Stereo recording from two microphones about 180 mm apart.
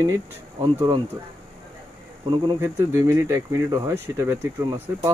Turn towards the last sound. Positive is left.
turn(degrees=-15)  # may be behind; listen again after turning